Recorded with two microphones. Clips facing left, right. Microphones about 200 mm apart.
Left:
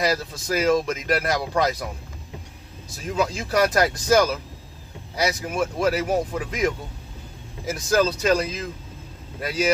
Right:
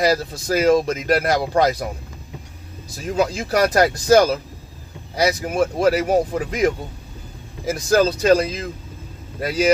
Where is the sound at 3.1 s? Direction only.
35° right (ahead or behind).